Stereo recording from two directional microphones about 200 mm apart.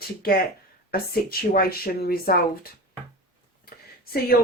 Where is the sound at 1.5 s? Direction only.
50° left (ahead or behind).